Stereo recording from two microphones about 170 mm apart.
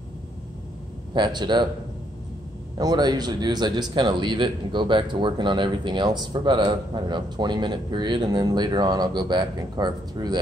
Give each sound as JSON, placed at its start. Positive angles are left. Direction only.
{"t": 1.1, "sound": "speech", "side_deg": -25}
{"t": 2.8, "sound": "speech", "side_deg": -25}